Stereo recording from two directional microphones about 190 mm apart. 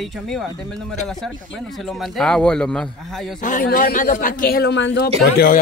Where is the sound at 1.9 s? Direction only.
5° left (ahead or behind).